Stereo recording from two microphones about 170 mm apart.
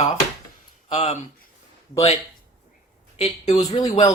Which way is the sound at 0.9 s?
35° left (ahead or behind).